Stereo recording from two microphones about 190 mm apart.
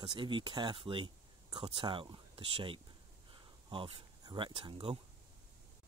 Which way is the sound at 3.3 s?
25° right (ahead or behind).